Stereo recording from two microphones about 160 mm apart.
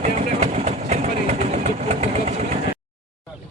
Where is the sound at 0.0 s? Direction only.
45° right (ahead or behind).